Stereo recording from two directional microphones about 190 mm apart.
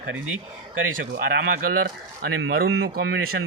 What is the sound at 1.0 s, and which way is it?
Speech, 50° right (ahead or behind).